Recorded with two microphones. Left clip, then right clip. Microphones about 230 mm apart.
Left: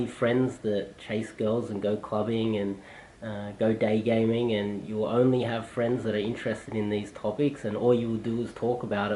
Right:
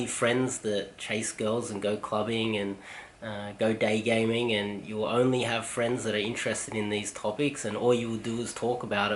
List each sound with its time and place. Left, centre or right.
0.0 s speech: centre
8.6 s speech: left
8.9 s speech: centre